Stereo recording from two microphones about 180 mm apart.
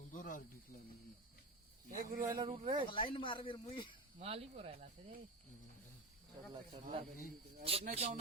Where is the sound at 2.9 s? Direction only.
30° left (ahead or behind).